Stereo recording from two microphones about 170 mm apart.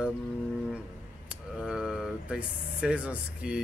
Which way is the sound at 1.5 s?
5° right (ahead or behind).